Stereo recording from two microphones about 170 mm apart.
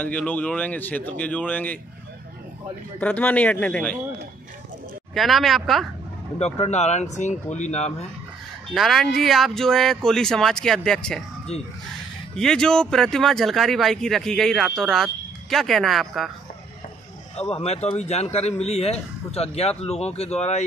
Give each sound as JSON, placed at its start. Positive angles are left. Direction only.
{"t": 0.0, "sound": "speech", "side_deg": 10}
{"t": 3.0, "sound": "speech", "side_deg": 10}
{"t": 5.1, "sound": "speech", "side_deg": 0}
{"t": 6.4, "sound": "speech", "side_deg": 40}
{"t": 8.7, "sound": "speech", "side_deg": 0}
{"t": 12.4, "sound": "speech", "side_deg": 5}
{"t": 17.4, "sound": "speech", "side_deg": 35}